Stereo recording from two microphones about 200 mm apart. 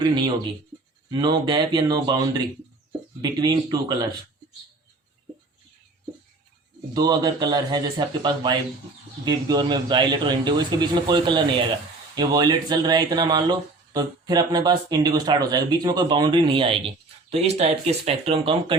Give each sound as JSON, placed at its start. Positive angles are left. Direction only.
{"t": 0.0, "sound": "speech", "side_deg": -20}
{"t": 6.9, "sound": "speech", "side_deg": -20}